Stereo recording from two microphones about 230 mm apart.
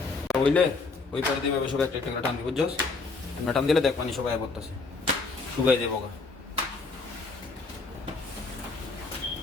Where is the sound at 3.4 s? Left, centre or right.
Centre.